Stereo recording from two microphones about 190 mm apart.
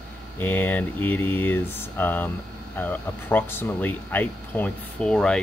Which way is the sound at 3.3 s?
10° left (ahead or behind).